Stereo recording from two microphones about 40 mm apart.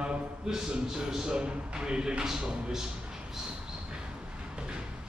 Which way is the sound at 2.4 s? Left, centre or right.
Right.